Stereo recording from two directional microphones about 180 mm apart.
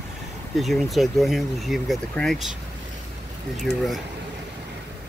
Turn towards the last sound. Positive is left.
turn(degrees=0)  # may be behind; listen again after turning